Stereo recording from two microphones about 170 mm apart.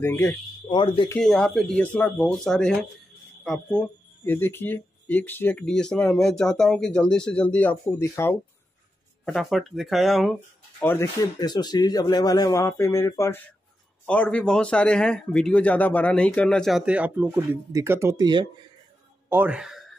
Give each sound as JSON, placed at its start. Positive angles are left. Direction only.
{"t": 0.0, "sound": "speech", "side_deg": 15}
{"t": 0.7, "sound": "a man's voice", "side_deg": 30}
{"t": 1.0, "sound": "a man's voice", "side_deg": 5}
{"t": 4.2, "sound": "speech", "side_deg": 15}
{"t": 9.2, "sound": "a man's voice", "side_deg": 0}
{"t": 10.8, "sound": "speech", "side_deg": 10}
{"t": 11.3, "sound": "a man's voice", "side_deg": 25}
{"t": 14.0, "sound": "a man's voice", "side_deg": 5}
{"t": 19.2, "sound": "speech", "side_deg": -10}